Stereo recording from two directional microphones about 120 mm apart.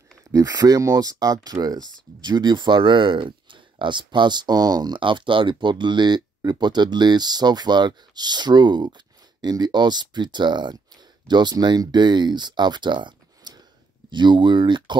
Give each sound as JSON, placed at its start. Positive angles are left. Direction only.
{"t": 0.2, "sound": "speech", "side_deg": -30}